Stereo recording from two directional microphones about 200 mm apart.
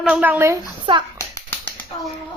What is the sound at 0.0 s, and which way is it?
Speech, 5° right (ahead or behind).